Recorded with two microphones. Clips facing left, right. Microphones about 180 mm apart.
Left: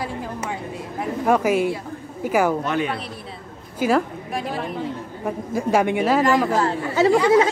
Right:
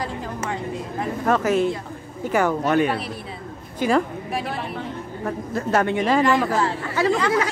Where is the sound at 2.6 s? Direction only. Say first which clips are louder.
Right 4 dB; 50° right (ahead or behind).